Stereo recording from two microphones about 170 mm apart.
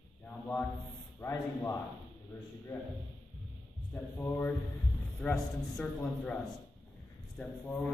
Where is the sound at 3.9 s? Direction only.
10° left (ahead or behind).